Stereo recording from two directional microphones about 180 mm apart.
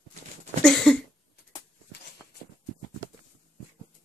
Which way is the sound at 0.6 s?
5° left (ahead or behind).